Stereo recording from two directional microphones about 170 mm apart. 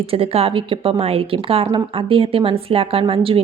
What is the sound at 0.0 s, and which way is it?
A woman's voice, 35° right (ahead or behind).